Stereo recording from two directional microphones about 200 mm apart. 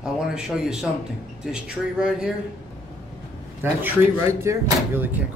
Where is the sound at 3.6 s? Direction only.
10° right (ahead or behind).